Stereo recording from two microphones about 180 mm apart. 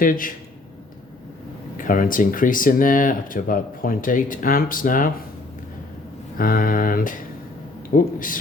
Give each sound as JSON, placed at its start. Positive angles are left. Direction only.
{"t": 0.0, "sound": "speech", "side_deg": 50}
{"t": 1.7, "sound": "speech", "side_deg": 50}
{"t": 6.3, "sound": "speech", "side_deg": 55}